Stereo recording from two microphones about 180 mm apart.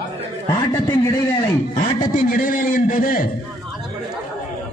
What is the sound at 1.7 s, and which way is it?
A man's voice, 45° left (ahead or behind).